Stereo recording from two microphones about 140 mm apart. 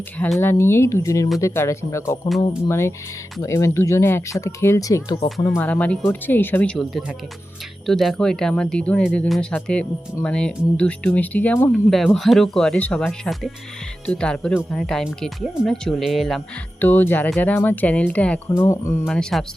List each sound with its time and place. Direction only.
0.3 s speech: 15° left (ahead or behind)
5.6 s speech: 10° left (ahead or behind)
11.7 s speech: centre (ahead or behind)
16.8 s speech: 15° left (ahead or behind)
19.0 s speech: 5° left (ahead or behind)